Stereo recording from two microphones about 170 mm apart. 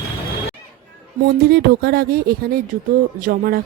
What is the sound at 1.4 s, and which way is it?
Speech, 65° right (ahead or behind).